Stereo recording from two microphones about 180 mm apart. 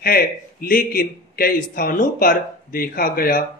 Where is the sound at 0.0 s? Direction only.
55° left (ahead or behind).